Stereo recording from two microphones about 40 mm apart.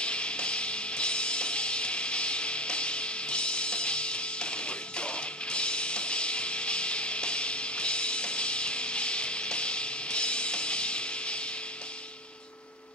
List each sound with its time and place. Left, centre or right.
0.0 s music: left